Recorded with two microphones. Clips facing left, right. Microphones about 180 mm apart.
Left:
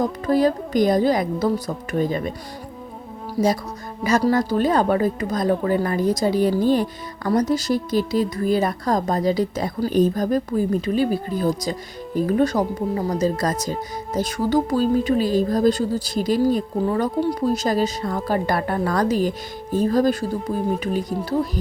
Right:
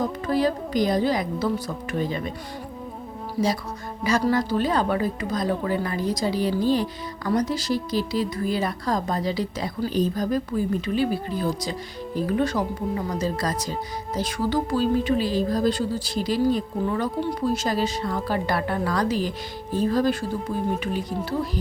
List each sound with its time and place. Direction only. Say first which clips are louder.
0.3 s speech: left 5 dB; 45° left (ahead or behind)
3.4 s speech: left 4 dB; 35° left (ahead or behind)